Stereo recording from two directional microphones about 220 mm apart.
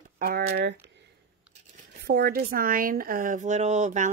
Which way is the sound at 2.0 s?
45° right (ahead or behind).